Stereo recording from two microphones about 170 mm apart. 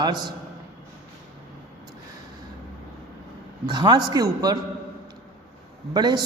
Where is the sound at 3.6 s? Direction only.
25° right (ahead or behind).